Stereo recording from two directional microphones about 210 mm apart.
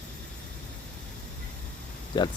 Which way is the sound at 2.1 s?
20° left (ahead or behind).